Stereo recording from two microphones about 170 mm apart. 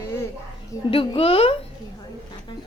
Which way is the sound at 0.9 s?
35° left (ahead or behind).